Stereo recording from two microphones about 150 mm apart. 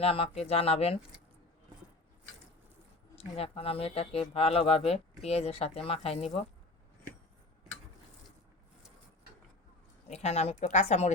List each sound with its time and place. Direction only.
0.0 s speech: 40° left (ahead or behind)
3.2 s speech: 40° left (ahead or behind)
10.1 s a woman's voice: 45° left (ahead or behind)